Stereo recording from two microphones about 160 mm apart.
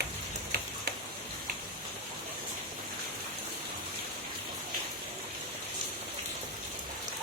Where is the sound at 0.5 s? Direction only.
90° right.